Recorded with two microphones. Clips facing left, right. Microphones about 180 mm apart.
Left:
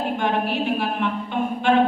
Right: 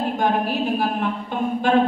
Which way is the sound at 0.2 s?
40° right (ahead or behind).